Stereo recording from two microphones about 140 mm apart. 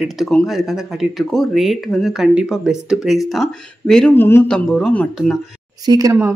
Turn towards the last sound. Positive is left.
turn(degrees=-25)  # may be behind; listen again after turning